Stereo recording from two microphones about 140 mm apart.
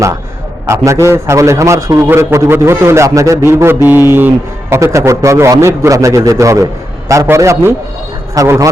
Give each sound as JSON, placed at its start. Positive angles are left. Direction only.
{"t": 0.9, "sound": "a man's voice", "side_deg": -20}